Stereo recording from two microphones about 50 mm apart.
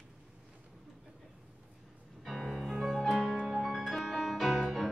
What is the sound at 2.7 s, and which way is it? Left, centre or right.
Music, centre.